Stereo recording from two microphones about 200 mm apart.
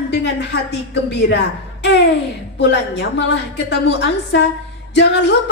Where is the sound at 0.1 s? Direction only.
60° left (ahead or behind).